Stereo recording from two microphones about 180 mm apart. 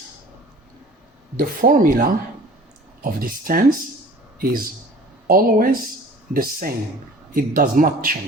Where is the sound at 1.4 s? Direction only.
50° right (ahead or behind).